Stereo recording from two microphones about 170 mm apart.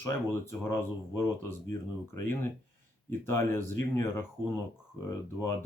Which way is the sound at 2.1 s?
15° left (ahead or behind).